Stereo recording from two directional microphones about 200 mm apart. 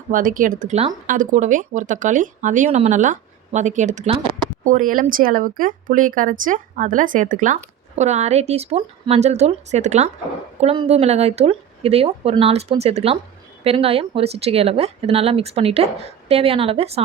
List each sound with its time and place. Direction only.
0.1 s speech: 40° right (ahead or behind)
4.6 s a woman's voice: 40° right (ahead or behind)